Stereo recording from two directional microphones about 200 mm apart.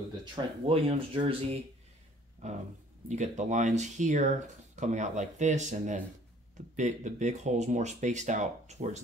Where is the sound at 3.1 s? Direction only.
35° right (ahead or behind).